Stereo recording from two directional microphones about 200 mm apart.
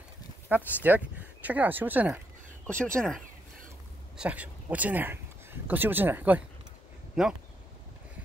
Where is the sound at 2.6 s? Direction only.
5° left (ahead or behind).